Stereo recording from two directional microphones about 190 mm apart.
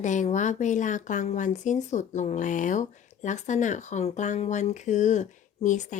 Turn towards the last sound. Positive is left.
turn(degrees=40)  # may be behind; listen again after turning